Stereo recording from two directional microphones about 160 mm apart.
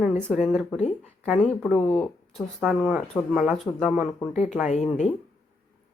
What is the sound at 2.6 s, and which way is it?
Speech, 5° right (ahead or behind).